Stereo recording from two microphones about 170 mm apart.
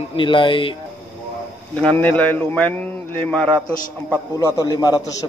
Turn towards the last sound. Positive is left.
turn(degrees=20)  # may be behind; listen again after turning